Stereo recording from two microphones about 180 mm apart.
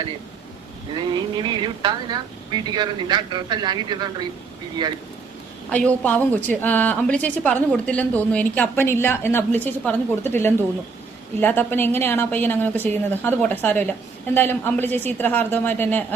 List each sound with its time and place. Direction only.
0.9 s speech: 25° right (ahead or behind)
5.7 s a woman's voice: 5° left (ahead or behind)